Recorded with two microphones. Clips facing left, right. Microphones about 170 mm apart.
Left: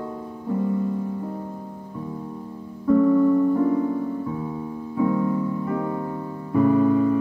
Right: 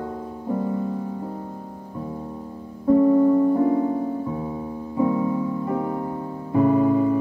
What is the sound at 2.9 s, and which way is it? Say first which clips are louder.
Music: right 1 dB; 35° right (ahead or behind).